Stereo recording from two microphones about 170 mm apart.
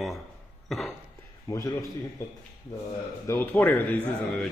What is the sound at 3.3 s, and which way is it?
A man's voice, 10° left (ahead or behind).